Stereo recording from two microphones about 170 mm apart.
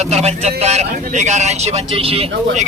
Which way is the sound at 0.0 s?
40° right (ahead or behind).